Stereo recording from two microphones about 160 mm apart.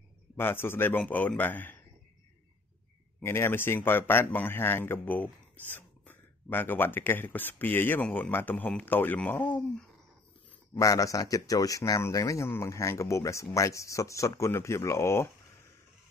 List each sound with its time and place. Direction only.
0.4 s a man's voice: 15° left (ahead or behind)
3.2 s a man's voice: 15° left (ahead or behind)
10.7 s speech: 20° left (ahead or behind)